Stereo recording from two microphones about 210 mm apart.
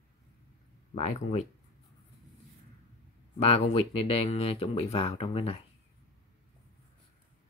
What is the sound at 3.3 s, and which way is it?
Speech, 30° left (ahead or behind).